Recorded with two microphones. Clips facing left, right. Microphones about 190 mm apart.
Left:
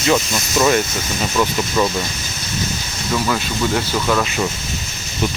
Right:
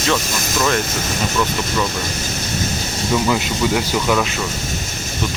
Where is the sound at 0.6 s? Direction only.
10° left (ahead or behind).